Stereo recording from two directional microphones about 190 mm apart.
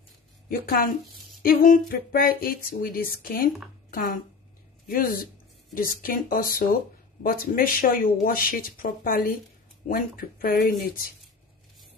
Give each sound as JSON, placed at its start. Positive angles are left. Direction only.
{"t": 0.5, "sound": "speech", "side_deg": 45}